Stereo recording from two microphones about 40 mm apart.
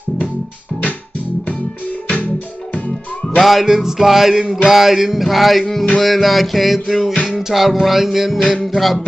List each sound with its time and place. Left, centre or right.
3.3 s music: centre